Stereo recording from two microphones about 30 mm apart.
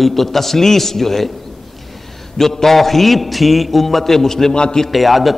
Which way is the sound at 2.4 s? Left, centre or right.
Centre.